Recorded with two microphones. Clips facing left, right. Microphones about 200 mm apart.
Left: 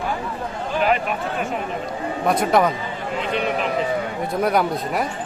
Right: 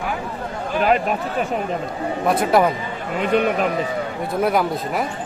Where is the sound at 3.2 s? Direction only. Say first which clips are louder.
Right 5 dB; 50° right (ahead or behind).